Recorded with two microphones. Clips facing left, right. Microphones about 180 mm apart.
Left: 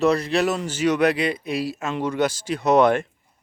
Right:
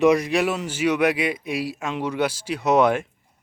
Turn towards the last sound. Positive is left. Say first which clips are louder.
# left 1 dB
turn(degrees=-5)  # may be behind; listen again after turning